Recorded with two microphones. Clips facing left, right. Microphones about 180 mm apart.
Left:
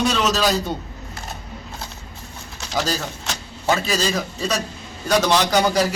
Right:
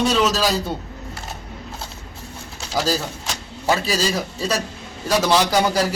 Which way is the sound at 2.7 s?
5° right (ahead or behind).